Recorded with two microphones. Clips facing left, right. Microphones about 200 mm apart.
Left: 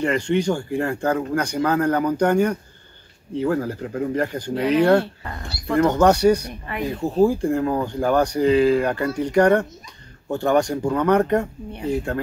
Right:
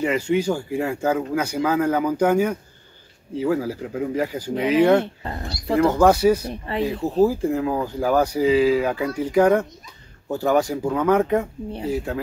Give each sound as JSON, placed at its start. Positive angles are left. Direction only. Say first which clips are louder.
{"t": 0.0, "sound": "speech", "louder": "even", "side_deg": -5}
{"t": 4.9, "sound": "speech", "louder": "even", "side_deg": -20}
{"t": 5.8, "sound": "speech", "louder": "even", "side_deg": -5}
{"t": 6.5, "sound": "speech", "louder": "right 3 dB", "side_deg": -30}
{"t": 6.9, "sound": "speech", "louder": "left 2 dB", "side_deg": 0}